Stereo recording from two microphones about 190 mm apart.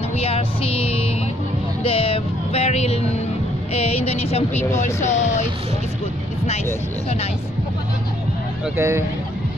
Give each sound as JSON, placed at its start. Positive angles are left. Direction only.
{"t": 0.2, "sound": "music", "side_deg": 30}
{"t": 3.7, "sound": "speech", "side_deg": 30}
{"t": 8.7, "sound": "speech", "side_deg": -15}